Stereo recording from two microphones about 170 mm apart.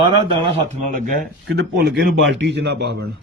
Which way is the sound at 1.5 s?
85° right.